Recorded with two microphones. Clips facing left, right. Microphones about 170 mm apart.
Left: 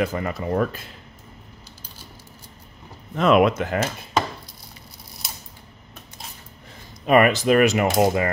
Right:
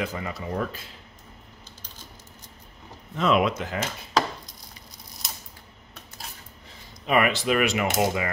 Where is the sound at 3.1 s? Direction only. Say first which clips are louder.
Left 5 dB; 55° left (ahead or behind).